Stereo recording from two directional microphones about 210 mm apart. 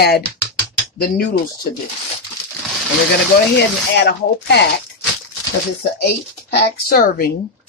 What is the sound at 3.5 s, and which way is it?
Speech, 50° left (ahead or behind).